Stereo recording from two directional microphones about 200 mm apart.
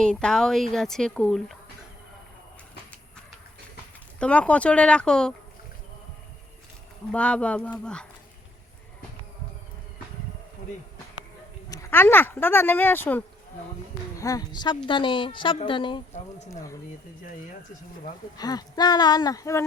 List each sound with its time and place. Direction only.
0.0 s speech: 5° left (ahead or behind)
4.2 s speech: 5° left (ahead or behind)
7.1 s speech: 5° left (ahead or behind)
11.7 s a woman's voice: 15° left (ahead or behind)
18.3 s a woman's voice: 20° left (ahead or behind)